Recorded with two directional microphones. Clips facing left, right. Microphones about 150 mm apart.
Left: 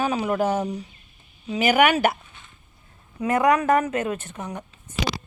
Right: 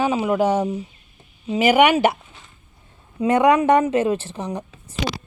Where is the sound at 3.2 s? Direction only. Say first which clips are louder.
Right 4 dB; 25° right (ahead or behind).